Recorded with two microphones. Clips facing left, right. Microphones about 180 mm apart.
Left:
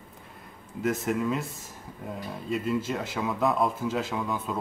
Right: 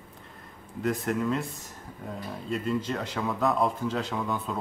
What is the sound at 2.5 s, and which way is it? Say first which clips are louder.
Speech: left 1 dB; 5° left (ahead or behind).